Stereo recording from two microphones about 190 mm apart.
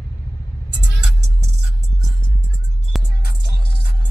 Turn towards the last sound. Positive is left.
turn(degrees=0)  # may be behind; listen again after turning